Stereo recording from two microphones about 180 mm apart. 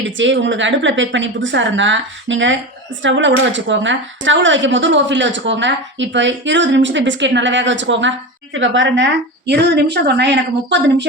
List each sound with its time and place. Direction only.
0.2 s speech: 90° right
9.5 s a woman's voice: 70° right (ahead or behind)